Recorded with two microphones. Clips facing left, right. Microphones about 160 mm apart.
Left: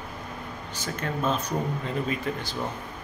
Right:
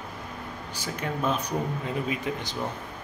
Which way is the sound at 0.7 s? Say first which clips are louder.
Left 1 dB; 10° right (ahead or behind).